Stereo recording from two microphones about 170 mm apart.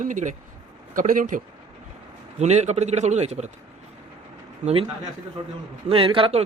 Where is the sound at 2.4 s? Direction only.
40° right (ahead or behind).